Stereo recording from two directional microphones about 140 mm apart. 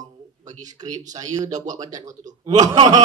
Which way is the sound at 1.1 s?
25° right (ahead or behind).